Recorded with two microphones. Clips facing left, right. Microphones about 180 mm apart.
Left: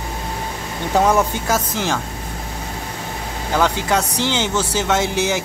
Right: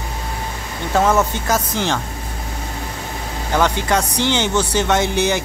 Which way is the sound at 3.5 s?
5° left (ahead or behind).